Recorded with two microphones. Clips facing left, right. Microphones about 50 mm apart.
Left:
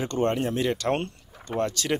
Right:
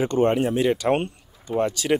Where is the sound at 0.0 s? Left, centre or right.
Centre.